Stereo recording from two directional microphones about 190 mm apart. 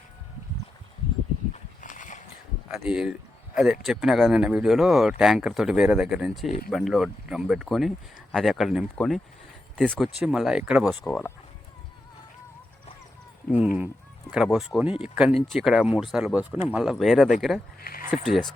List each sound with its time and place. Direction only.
1.5 s a sound: 40° left (ahead or behind)
2.7 s speech: 5° right (ahead or behind)
13.5 s speech: 5° right (ahead or behind)
17.8 s speech: 50° left (ahead or behind)
18.1 s speech: centre (ahead or behind)